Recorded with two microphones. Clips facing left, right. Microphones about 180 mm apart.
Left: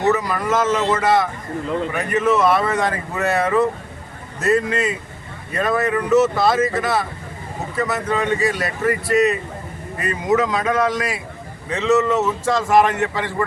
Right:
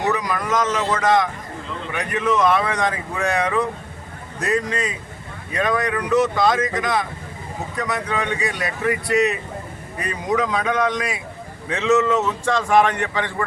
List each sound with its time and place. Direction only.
0.1 s speech: 5° left (ahead or behind)